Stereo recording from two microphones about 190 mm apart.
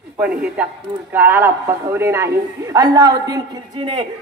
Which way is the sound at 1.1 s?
10° right (ahead or behind).